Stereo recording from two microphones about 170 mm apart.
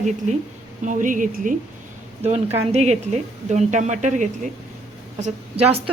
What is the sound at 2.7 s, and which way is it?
A woman's voice, 40° right (ahead or behind).